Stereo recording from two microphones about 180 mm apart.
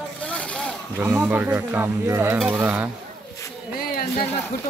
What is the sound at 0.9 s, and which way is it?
Speech, 10° right (ahead or behind).